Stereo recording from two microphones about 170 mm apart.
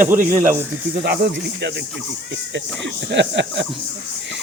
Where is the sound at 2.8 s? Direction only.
90° right.